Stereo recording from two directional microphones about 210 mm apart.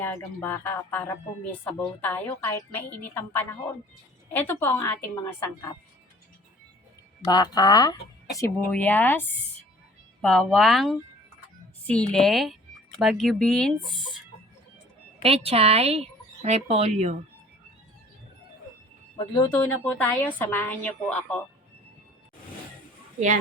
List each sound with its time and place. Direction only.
0.0 s a woman's voice: 10° left (ahead or behind)
7.3 s a woman's voice: 20° left (ahead or behind); by 10.9 s centre (ahead or behind)
12.1 s speech: centre (ahead or behind)
15.2 s speech: 30° right (ahead or behind)
19.1 s a woman's voice: 20° left (ahead or behind)